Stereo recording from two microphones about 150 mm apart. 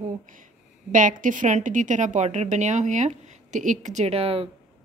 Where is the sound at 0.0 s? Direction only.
60° right (ahead or behind).